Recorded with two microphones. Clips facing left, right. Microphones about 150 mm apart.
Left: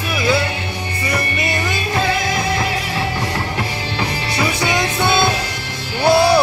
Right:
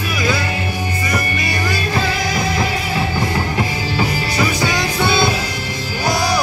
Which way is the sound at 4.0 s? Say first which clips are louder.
Right 2 dB; centre (ahead or behind).